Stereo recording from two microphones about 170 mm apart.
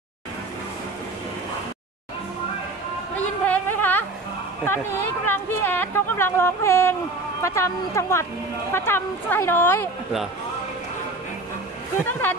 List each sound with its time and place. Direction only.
3.2 s a sound: 10° left (ahead or behind)
4.6 s a woman's voice: 10° left (ahead or behind)
12.1 s a woman's voice: 10° left (ahead or behind)